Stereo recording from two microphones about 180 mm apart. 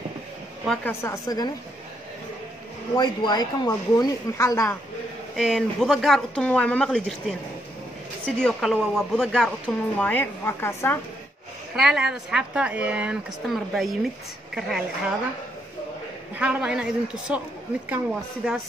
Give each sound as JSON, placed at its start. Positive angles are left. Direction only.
{"t": 0.7, "sound": "speech", "side_deg": 10}
{"t": 3.0, "sound": "speech", "side_deg": 25}
{"t": 5.3, "sound": "a woman's voice", "side_deg": 0}
{"t": 8.4, "sound": "a woman's voice", "side_deg": 5}
{"t": 11.7, "sound": "a woman's voice", "side_deg": 0}
{"t": 16.3, "sound": "a woman's voice", "side_deg": -5}
{"t": 18.4, "sound": "a woman's voice", "side_deg": -5}